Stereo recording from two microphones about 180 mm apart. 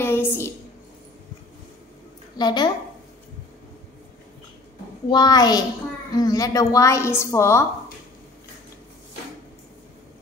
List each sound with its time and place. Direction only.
0.0 s a sound: 10° left (ahead or behind)
2.3 s a child's voice: 25° left (ahead or behind)
5.1 s a child's voice: 20° left (ahead or behind)